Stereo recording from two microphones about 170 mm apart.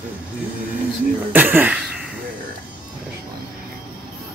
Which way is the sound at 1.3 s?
10° right (ahead or behind).